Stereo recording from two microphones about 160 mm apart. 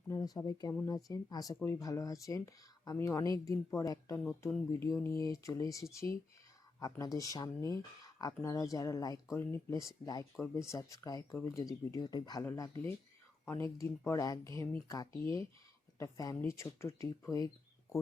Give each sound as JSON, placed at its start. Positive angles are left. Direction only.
{"t": 0.1, "sound": "speech", "side_deg": 25}
{"t": 4.2, "sound": "speech", "side_deg": 5}
{"t": 4.8, "sound": "speech", "side_deg": 15}